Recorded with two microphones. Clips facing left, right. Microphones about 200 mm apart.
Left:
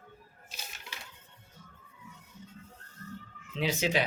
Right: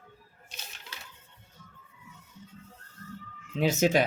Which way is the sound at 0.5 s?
5° left (ahead or behind).